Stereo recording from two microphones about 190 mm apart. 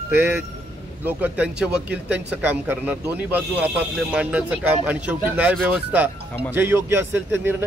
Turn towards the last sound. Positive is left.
turn(degrees=-10)  # may be behind; listen again after turning